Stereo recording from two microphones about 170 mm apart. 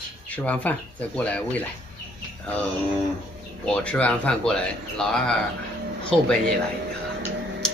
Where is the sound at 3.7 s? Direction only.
5° left (ahead or behind).